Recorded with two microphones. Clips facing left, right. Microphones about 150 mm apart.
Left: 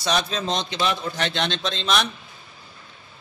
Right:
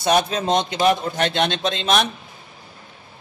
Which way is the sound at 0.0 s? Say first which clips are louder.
Right 5 dB; 50° right (ahead or behind).